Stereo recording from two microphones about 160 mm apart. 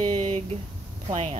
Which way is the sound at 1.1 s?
40° right (ahead or behind).